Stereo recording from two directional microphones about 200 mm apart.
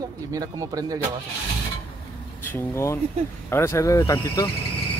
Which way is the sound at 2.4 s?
15° left (ahead or behind).